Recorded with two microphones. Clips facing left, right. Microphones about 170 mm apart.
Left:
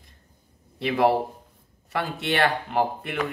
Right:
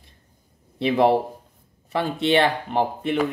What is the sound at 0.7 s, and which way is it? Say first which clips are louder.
A man's voice: right 3 dB; 25° right (ahead or behind).